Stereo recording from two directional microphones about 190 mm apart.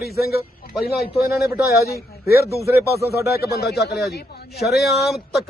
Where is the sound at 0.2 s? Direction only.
55° left (ahead or behind).